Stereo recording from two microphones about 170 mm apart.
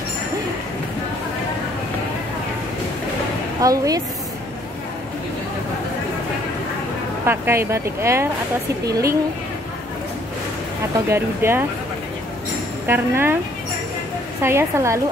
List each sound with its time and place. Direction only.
3.6 s speech: 20° right (ahead or behind)
7.2 s speech: 15° right (ahead or behind)
11.1 s speech: 15° right (ahead or behind)
12.8 s speech: 15° right (ahead or behind)
14.4 s speech: 15° right (ahead or behind)